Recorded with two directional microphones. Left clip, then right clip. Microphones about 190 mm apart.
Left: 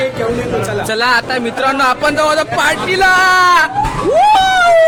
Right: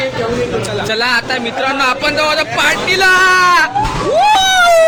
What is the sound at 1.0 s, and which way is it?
Speech, 25° left (ahead or behind).